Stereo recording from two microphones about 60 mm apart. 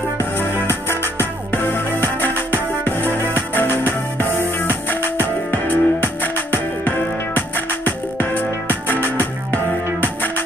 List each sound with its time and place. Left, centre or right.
0.8 s music: left